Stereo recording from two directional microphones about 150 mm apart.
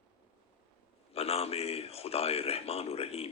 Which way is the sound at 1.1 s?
40° left (ahead or behind).